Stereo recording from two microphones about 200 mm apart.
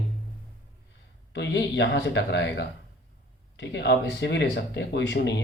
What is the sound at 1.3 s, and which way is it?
Speech, 60° left (ahead or behind).